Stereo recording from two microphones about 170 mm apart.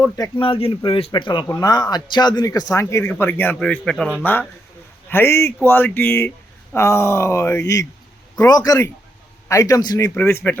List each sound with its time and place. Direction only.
0.2 s speech: 30° left (ahead or behind); by 10.6 s 15° left (ahead or behind)